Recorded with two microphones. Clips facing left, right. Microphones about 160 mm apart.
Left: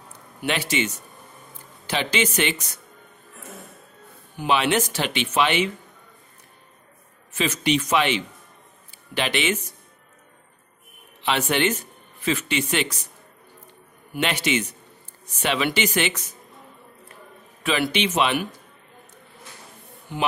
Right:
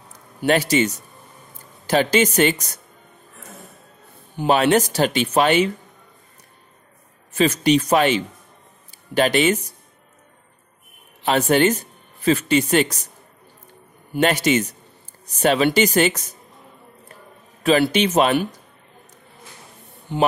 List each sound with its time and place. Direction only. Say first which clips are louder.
0.5 s speech: right 7 dB; 40° right (ahead or behind)
4.5 s speech: right 5 dB; 40° right (ahead or behind)
7.3 s speech: right 6 dB; 40° right (ahead or behind)
11.2 s speech: right 6 dB; 40° right (ahead or behind)
14.2 s speech: right 6 dB; 40° right (ahead or behind)
17.6 s speech: right 6 dB; 40° right (ahead or behind)
20.1 s speech: right 7 dB; 30° right (ahead or behind)